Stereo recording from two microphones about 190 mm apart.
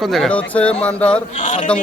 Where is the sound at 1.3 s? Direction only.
40° left (ahead or behind).